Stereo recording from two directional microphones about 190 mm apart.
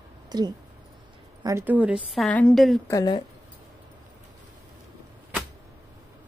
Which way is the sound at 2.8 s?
20° left (ahead or behind).